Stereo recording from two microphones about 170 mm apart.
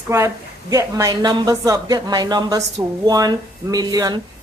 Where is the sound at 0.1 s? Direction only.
20° right (ahead or behind).